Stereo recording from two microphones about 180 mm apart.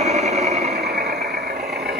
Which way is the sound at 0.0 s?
35° right (ahead or behind).